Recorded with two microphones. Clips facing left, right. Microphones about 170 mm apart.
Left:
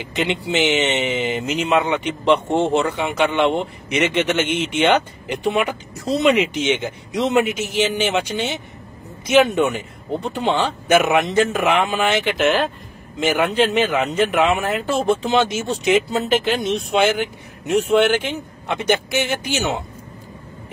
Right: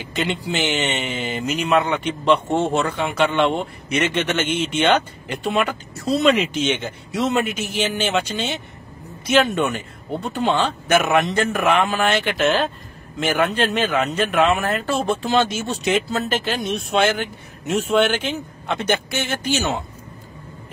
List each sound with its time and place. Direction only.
0.0 s speech: 20° left (ahead or behind)